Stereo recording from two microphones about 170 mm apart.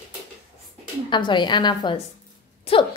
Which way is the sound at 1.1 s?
25° left (ahead or behind).